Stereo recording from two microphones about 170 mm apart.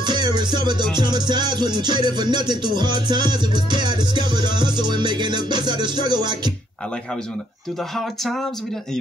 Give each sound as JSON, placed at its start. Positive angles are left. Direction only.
{"t": 0.0, "sound": "music", "side_deg": -25}